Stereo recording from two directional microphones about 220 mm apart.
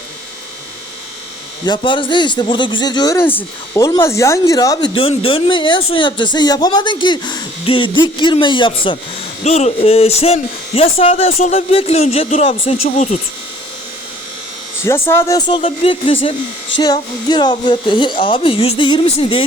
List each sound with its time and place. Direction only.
1.6 s speech: 20° left (ahead or behind)
14.8 s speech: 10° left (ahead or behind)